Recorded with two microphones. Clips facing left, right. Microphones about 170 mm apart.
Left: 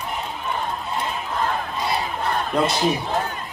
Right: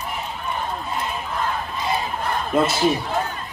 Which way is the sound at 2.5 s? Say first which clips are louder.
Right 3 dB; 5° right (ahead or behind).